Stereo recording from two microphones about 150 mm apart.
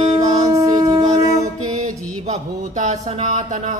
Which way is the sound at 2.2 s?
50° right (ahead or behind).